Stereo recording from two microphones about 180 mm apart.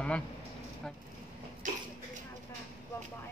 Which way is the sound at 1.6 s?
45° right (ahead or behind).